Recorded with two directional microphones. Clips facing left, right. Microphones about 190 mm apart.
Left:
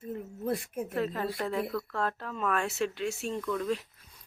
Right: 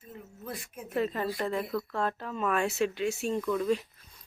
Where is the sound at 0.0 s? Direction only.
60° left (ahead or behind).